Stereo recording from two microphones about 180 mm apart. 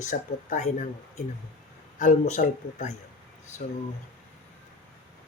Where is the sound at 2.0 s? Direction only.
45° left (ahead or behind).